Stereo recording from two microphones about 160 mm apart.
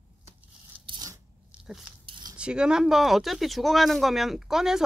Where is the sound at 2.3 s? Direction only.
5° right (ahead or behind).